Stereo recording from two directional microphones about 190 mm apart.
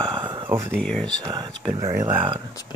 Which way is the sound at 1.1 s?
20° right (ahead or behind).